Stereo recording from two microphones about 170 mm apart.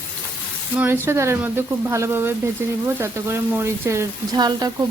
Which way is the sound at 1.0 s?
15° right (ahead or behind).